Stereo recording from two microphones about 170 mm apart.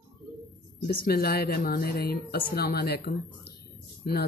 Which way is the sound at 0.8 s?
65° left (ahead or behind).